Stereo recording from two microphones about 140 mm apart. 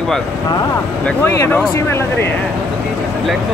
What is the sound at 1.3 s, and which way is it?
Speech, 20° left (ahead or behind).